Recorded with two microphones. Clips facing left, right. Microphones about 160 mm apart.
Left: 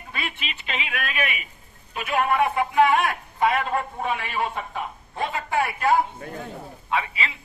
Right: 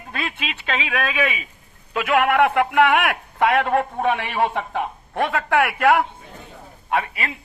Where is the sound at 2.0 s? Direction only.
90° right.